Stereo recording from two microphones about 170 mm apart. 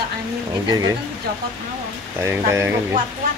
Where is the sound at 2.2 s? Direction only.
15° right (ahead or behind).